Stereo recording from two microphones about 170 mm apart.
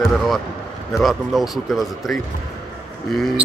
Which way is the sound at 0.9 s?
Centre (ahead or behind).